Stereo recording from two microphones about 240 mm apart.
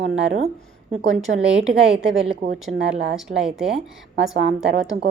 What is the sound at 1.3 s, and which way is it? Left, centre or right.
Speech, right.